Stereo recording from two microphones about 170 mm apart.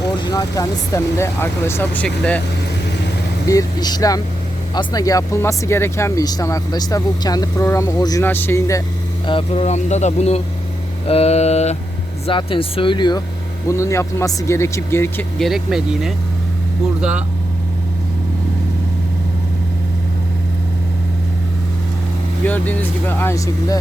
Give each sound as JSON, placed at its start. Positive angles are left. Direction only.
{"t": 0.0, "sound": "speech", "side_deg": 20}
{"t": 3.4, "sound": "speech", "side_deg": 20}
{"t": 9.2, "sound": "speech", "side_deg": 35}
{"t": 15.4, "sound": "speech", "side_deg": 0}
{"t": 22.4, "sound": "speech", "side_deg": 10}